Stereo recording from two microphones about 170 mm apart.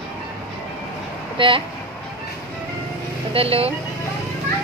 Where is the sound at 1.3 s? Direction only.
30° right (ahead or behind).